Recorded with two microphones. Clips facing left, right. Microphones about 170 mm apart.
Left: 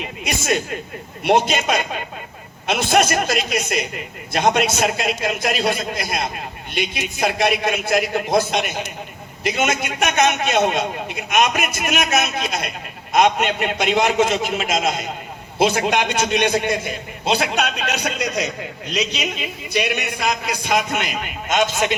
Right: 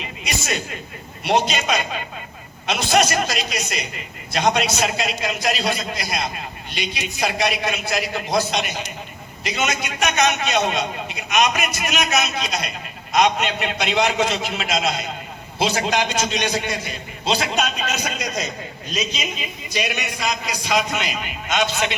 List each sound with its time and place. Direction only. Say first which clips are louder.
0.0 s a man's voice: left 3 dB; 50° left (ahead or behind)